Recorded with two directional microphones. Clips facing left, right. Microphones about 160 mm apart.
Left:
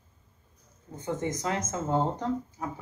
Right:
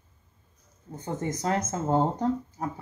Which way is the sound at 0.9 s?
35° right (ahead or behind).